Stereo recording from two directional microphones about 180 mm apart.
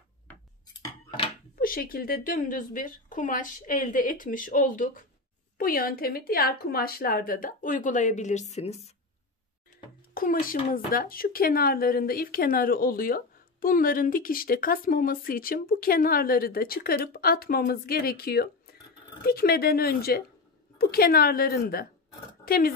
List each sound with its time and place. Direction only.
0.3 s cutlery: 10° left (ahead or behind)
1.6 s speech: 50° left (ahead or behind); by 8.9 s 35° left (ahead or behind)
10.1 s a woman's voice: 50° left (ahead or behind)